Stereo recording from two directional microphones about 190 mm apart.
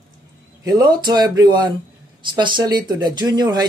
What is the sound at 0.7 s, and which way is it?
Speech, 20° right (ahead or behind).